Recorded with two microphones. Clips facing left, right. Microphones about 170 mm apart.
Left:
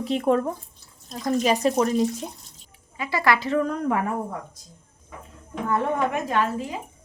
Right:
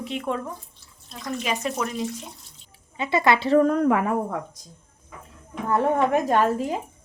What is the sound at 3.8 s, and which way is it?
Speech, 90° right.